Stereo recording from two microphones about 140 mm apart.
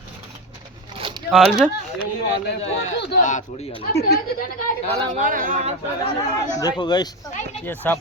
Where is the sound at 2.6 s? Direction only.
55° left (ahead or behind).